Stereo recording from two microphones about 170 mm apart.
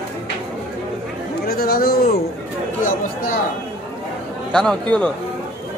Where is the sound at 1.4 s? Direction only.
65° left (ahead or behind).